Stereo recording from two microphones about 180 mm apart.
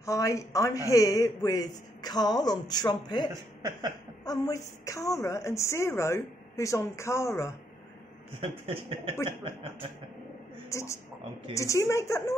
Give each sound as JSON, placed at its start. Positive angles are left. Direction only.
{"t": 0.0, "sound": "a woman's voice", "side_deg": 15}
{"t": 8.4, "sound": "speech", "side_deg": -30}
{"t": 9.4, "sound": "a sound", "side_deg": -30}
{"t": 10.7, "sound": "a woman's voice", "side_deg": 15}